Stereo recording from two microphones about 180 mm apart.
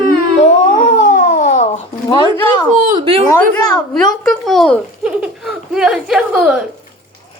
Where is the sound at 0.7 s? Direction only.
45° left (ahead or behind).